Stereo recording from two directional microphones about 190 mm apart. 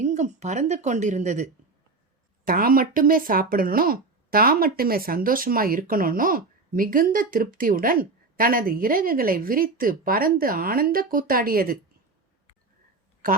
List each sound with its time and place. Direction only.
0.0 s speech: 40° right (ahead or behind)
2.4 s speech: 50° right (ahead or behind)